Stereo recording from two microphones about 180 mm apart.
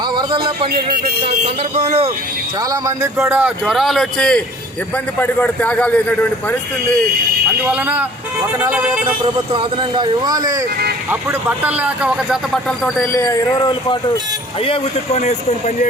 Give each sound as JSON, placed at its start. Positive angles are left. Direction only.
{"t": 0.2, "sound": "a sound", "side_deg": -25}
{"t": 1.2, "sound": "speech", "side_deg": -40}
{"t": 2.8, "sound": "a man's voice", "side_deg": -15}
{"t": 7.6, "sound": "speech", "side_deg": -10}
{"t": 9.5, "sound": "a man's voice", "side_deg": -25}
{"t": 11.1, "sound": "speech", "side_deg": -10}
{"t": 12.8, "sound": "a man's voice", "side_deg": 10}